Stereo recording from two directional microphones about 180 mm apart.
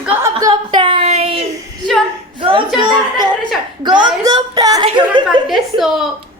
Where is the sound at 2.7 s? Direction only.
25° right (ahead or behind).